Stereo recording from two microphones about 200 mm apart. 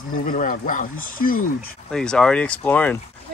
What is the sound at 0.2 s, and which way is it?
Speech, 40° left (ahead or behind).